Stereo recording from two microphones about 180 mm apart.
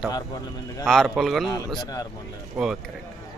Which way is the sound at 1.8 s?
20° left (ahead or behind).